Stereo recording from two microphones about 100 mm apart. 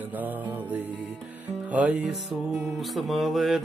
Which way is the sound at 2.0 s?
Centre (ahead or behind).